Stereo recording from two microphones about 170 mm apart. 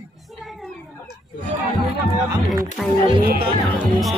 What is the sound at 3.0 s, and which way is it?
Speech, 30° right (ahead or behind).